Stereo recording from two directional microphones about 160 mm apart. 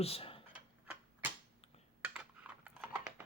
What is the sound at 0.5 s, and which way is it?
Tick-tock, 10° right (ahead or behind).